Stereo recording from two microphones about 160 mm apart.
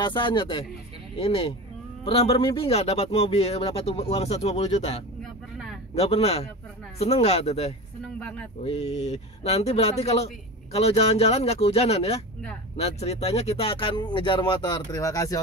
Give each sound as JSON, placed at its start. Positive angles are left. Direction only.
{"t": 0.0, "sound": "speech", "side_deg": 30}
{"t": 5.2, "sound": "vehicle", "side_deg": 0}
{"t": 5.9, "sound": "speech", "side_deg": 40}
{"t": 8.2, "sound": "speech", "side_deg": 5}
{"t": 8.6, "sound": "speech", "side_deg": 40}